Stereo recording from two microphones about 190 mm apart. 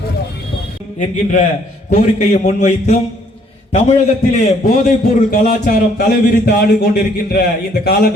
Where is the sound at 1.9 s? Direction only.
40° left (ahead or behind).